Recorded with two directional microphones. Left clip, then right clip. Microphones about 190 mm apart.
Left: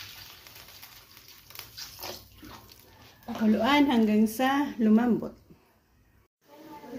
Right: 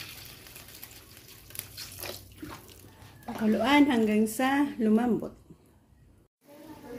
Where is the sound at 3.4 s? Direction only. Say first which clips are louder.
Even; 20° right (ahead or behind).